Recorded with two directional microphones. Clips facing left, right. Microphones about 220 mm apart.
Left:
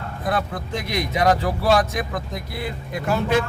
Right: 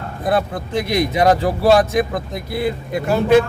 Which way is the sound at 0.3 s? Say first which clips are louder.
Right 5 dB; 30° right (ahead or behind).